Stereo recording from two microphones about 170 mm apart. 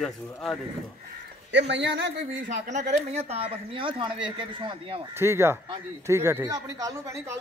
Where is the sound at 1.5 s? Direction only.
90° right.